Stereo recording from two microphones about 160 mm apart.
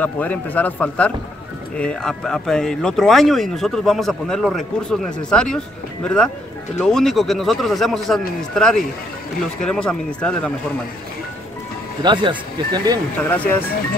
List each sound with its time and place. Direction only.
0.0 s speech: 10° left (ahead or behind)
12.0 s speech: 30° right (ahead or behind)
13.2 s speech: 10° left (ahead or behind)